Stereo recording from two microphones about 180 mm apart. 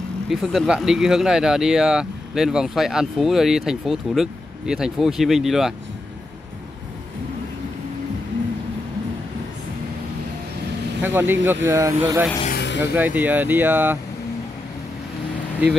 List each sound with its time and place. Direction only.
0.3 s speech: centre (ahead or behind)
11.0 s speech: 10° right (ahead or behind)
12.4 s vehicle: 70° left (ahead or behind)
12.9 s speech: 10° right (ahead or behind)